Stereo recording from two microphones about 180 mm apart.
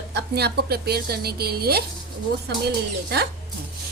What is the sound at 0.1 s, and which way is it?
A woman's voice, 65° right (ahead or behind).